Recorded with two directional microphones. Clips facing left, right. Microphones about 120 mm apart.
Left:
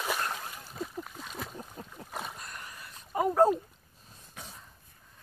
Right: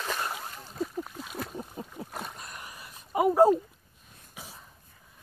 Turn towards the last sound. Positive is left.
turn(degrees=-5)  # may be behind; listen again after turning